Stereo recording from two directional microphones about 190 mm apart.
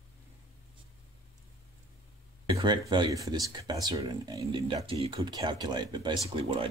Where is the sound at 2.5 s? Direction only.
20° right (ahead or behind).